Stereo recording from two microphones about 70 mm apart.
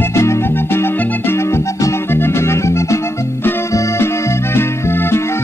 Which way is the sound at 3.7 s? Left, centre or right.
Left.